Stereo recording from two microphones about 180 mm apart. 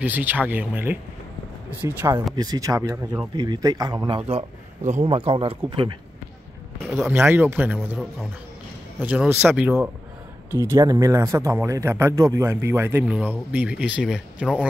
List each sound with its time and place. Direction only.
0.0 s speech: 10° right (ahead or behind)
4.2 s a man's voice: 35° right (ahead or behind)
6.9 s speech: 5° right (ahead or behind)
9.0 s speech: 10° right (ahead or behind)